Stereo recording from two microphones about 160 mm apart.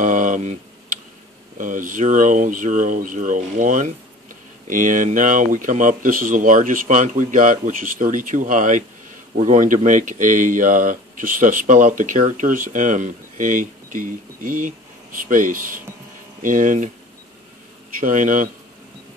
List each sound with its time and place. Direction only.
0.0 s a sound: 55° right (ahead or behind)
1.6 s speech: 55° right (ahead or behind)
18.0 s speech: 55° right (ahead or behind)